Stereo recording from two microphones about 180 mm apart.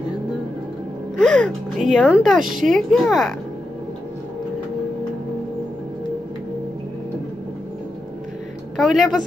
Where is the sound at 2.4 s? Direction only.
45° right (ahead or behind).